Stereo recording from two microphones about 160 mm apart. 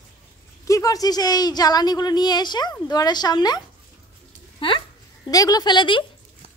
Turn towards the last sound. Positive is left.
turn(degrees=30)  # may be behind; listen again after turning